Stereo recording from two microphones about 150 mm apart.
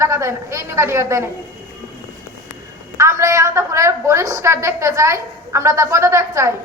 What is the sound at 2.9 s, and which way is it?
A woman's voice, 20° right (ahead or behind).